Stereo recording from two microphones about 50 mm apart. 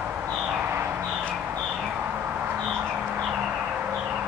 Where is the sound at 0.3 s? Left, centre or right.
Centre.